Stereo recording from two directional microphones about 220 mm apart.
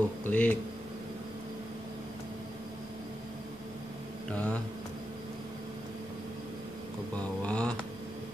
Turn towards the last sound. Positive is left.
turn(degrees=5)  # may be behind; listen again after turning